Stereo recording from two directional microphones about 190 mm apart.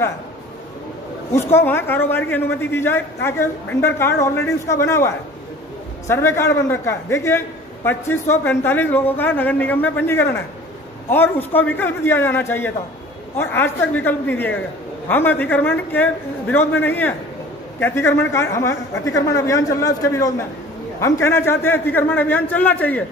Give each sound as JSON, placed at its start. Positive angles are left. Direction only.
{"t": 1.3, "sound": "a man's voice", "side_deg": 10}